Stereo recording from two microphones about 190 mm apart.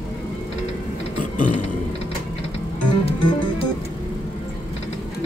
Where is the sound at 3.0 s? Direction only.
30° left (ahead or behind).